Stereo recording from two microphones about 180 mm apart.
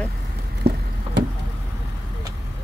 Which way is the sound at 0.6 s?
65° right (ahead or behind).